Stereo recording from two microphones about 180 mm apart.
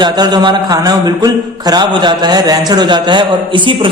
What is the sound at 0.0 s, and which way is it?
A man's voice, 25° right (ahead or behind).